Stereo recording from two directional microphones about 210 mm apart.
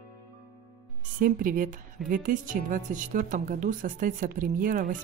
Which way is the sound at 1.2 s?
40° right (ahead or behind).